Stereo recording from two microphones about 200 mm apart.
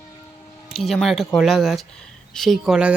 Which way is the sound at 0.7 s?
Centre (ahead or behind).